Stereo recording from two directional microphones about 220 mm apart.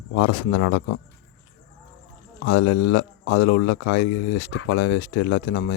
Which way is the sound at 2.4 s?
60° left (ahead or behind).